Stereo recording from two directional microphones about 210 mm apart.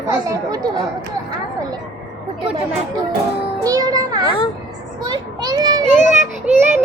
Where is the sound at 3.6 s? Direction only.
15° right (ahead or behind).